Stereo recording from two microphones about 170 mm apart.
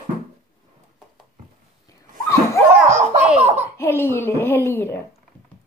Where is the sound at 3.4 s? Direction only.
40° right (ahead or behind).